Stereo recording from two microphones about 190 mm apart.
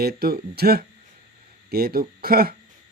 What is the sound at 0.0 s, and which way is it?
Speech, 55° right (ahead or behind).